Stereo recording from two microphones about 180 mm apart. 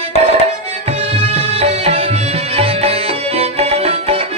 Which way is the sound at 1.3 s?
35° right (ahead or behind).